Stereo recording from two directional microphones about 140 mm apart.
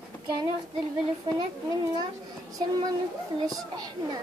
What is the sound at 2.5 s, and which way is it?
A child's voice, 30° right (ahead or behind).